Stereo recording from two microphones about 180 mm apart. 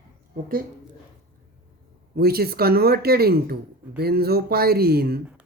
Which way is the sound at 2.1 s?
60° right (ahead or behind).